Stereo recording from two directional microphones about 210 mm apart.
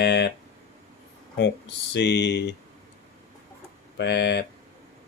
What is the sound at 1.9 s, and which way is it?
Speech, 55° left (ahead or behind).